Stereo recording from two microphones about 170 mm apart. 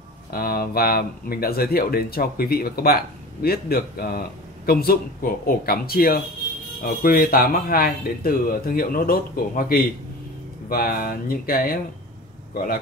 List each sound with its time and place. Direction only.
0.3 s speech: 65° left (ahead or behind)